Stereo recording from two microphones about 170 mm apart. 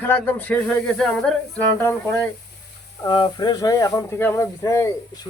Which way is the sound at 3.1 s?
25° left (ahead or behind).